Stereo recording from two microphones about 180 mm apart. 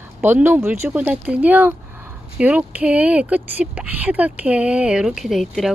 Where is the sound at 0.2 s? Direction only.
10° right (ahead or behind).